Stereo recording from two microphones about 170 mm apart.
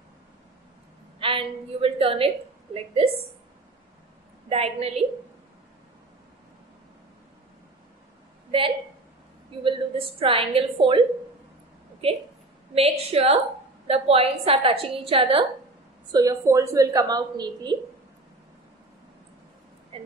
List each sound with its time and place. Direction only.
1.2 s a woman's voice: 30° right (ahead or behind)
4.5 s a woman's voice: 35° right (ahead or behind)
8.5 s a woman's voice: 30° right (ahead or behind)
12.0 s a woman's voice: 35° right (ahead or behind)
16.1 s a woman's voice: 20° right (ahead or behind)